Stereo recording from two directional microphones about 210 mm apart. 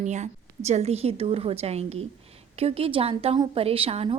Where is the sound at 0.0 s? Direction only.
35° right (ahead or behind).